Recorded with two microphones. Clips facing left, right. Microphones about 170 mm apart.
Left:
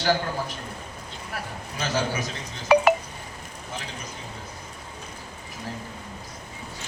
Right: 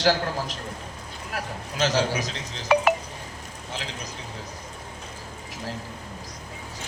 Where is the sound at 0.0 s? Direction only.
90° right.